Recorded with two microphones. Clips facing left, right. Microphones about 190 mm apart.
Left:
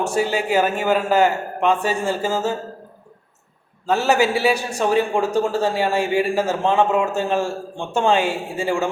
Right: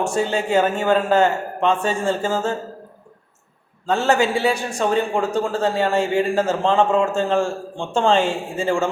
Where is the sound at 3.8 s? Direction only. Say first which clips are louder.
Even; 5° left (ahead or behind).